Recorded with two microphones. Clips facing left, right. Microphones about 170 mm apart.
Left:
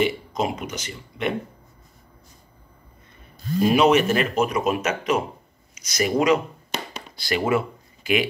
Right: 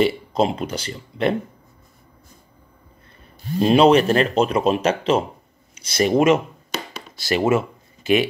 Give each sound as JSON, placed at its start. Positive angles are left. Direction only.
{"t": 0.0, "sound": "speech", "side_deg": -30}
{"t": 3.6, "sound": "speech", "side_deg": -30}